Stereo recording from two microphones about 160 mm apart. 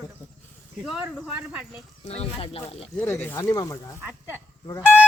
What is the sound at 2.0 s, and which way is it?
Speech, 40° left (ahead or behind).